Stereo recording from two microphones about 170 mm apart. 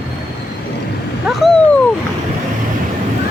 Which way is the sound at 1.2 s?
Centre (ahead or behind).